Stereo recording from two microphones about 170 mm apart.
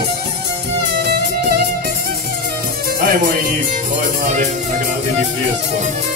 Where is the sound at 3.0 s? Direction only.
60° right (ahead or behind).